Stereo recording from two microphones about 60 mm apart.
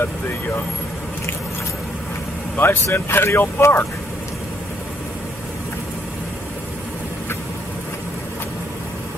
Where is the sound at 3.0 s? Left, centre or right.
Left.